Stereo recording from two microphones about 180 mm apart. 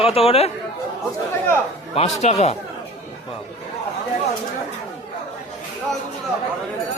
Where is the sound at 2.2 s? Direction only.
35° left (ahead or behind).